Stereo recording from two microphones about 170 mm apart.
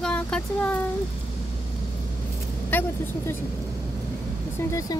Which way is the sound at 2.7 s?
10° left (ahead or behind).